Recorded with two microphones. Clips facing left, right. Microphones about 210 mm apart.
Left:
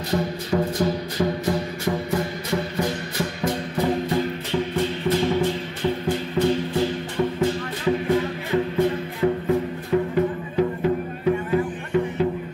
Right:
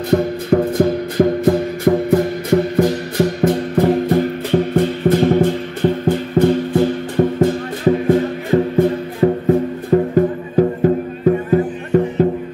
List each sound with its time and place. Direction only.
0.1 s music: 55° right (ahead or behind)
2.7 s music: 45° right (ahead or behind)
3.3 s music: 55° right (ahead or behind)
8.5 s music: 35° right (ahead or behind)